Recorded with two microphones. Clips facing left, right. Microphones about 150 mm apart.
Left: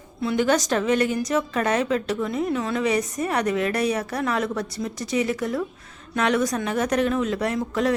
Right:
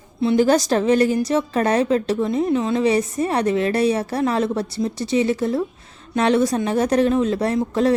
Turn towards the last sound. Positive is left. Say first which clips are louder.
# right 4 dB
turn(degrees=-30)  # may be behind; listen again after turning